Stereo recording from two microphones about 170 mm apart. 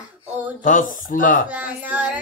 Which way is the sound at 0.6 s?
50° left (ahead or behind).